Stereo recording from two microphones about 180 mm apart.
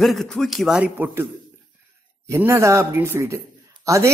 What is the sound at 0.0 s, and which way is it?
Speech, centre (ahead or behind).